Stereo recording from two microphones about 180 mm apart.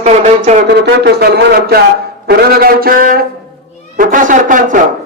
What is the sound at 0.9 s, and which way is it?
Speech, 60° right (ahead or behind).